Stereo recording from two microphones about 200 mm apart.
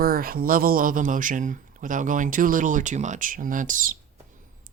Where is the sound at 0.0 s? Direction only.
45° right (ahead or behind).